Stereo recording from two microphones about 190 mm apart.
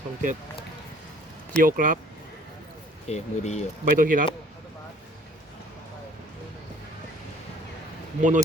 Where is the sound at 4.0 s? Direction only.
45° right (ahead or behind).